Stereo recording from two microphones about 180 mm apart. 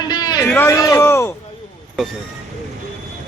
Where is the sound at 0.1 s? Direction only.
20° left (ahead or behind).